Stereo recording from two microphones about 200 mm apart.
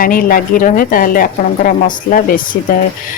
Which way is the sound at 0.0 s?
45° left (ahead or behind).